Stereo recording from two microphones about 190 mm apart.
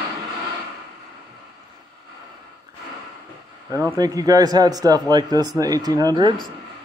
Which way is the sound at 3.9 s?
20° right (ahead or behind).